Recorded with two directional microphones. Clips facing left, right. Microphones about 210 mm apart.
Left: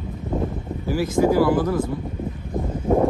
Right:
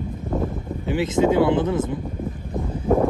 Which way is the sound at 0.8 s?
25° right (ahead or behind).